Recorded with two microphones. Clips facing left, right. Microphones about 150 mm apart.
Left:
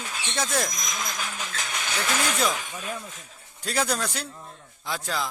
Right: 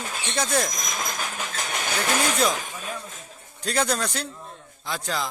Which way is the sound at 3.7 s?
5° left (ahead or behind).